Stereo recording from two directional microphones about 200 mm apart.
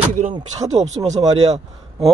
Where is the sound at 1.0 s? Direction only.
35° right (ahead or behind).